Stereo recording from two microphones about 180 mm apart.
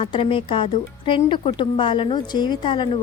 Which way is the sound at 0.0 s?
30° left (ahead or behind).